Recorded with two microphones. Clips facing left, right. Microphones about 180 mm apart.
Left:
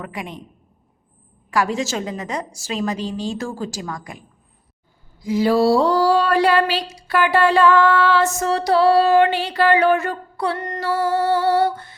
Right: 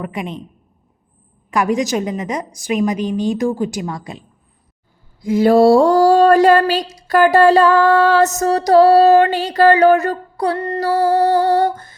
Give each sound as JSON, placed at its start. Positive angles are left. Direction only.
{"t": 0.0, "sound": "a woman's voice", "side_deg": -20}
{"t": 1.5, "sound": "a woman's voice", "side_deg": -20}
{"t": 5.2, "sound": "a sound", "side_deg": -50}